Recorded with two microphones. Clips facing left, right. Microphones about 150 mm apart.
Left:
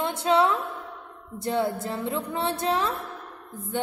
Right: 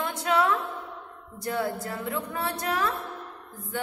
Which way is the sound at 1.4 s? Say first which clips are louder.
Left 3 dB; 25° left (ahead or behind).